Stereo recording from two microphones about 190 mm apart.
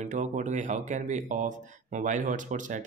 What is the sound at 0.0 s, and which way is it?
Speech, 40° right (ahead or behind).